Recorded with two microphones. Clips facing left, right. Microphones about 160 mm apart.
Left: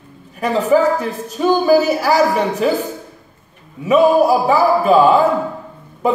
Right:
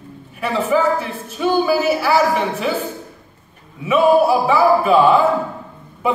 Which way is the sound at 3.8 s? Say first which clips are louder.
Left 2 dB; 40° left (ahead or behind).